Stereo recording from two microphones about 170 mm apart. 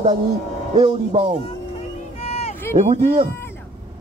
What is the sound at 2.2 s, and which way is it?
Run, 35° left (ahead or behind).